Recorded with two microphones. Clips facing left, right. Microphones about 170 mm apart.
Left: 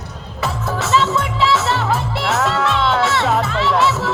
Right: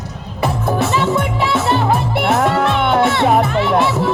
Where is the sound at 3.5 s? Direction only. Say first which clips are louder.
Right 2 dB; 15° right (ahead or behind).